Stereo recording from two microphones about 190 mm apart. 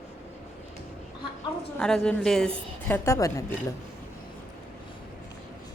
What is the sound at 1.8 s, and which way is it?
Speech, 5° left (ahead or behind).